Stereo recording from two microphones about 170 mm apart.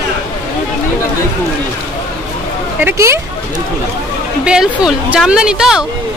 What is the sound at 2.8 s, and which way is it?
Speech, 15° right (ahead or behind).